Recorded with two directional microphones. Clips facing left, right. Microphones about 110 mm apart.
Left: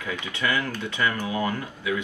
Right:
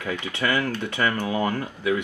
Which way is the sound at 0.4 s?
40° right (ahead or behind).